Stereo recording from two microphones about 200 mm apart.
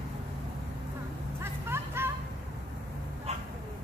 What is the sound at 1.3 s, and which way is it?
Vehicle, 10° right (ahead or behind).